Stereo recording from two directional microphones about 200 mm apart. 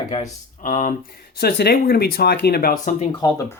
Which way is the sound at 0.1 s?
35° left (ahead or behind).